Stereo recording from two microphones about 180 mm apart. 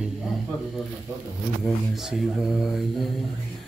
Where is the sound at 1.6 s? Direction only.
Centre (ahead or behind).